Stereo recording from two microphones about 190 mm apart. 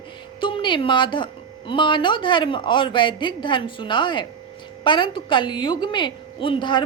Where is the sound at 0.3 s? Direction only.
25° left (ahead or behind).